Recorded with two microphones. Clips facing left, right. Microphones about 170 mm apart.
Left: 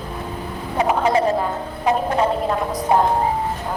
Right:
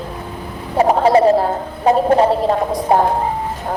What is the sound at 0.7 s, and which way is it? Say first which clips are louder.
Speech: right 6 dB; 35° right (ahead or behind).